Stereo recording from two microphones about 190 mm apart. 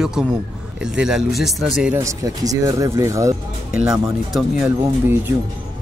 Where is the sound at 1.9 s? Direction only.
15° right (ahead or behind).